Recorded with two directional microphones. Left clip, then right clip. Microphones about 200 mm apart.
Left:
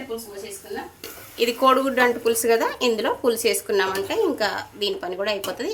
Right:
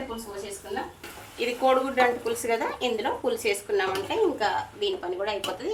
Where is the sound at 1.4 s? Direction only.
55° left (ahead or behind).